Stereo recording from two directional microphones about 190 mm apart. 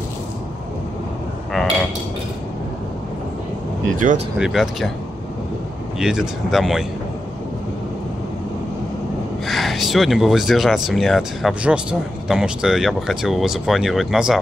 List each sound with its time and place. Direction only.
4.0 s speech: 45° right (ahead or behind)
4.4 s speech: centre (ahead or behind)
5.9 s speech: centre (ahead or behind)
9.5 s speech: centre (ahead or behind)